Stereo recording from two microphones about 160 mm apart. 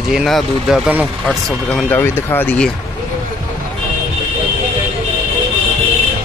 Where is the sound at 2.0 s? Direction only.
15° left (ahead or behind).